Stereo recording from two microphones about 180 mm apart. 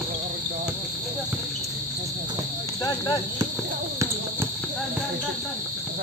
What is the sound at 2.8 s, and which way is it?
Speech, 20° left (ahead or behind).